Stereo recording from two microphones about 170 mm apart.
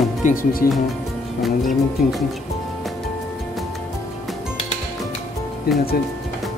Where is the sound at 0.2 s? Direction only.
55° left (ahead or behind).